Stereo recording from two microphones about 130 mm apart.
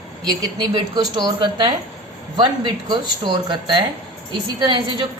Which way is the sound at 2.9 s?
35° right (ahead or behind).